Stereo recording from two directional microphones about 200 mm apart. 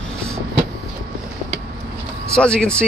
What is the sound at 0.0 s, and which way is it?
Vehicle, 5° left (ahead or behind).